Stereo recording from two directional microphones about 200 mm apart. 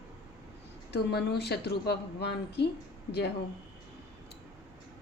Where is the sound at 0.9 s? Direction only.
55° left (ahead or behind).